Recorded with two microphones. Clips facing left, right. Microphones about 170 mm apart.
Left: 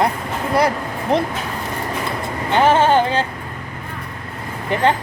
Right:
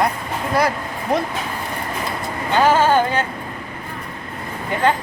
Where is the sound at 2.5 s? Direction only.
25° left (ahead or behind).